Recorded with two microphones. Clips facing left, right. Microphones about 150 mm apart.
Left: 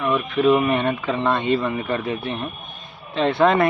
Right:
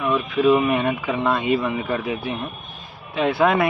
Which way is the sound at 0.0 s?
Centre (ahead or behind).